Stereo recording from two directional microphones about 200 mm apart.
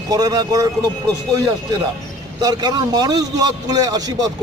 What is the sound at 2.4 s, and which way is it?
A man's voice, 20° right (ahead or behind).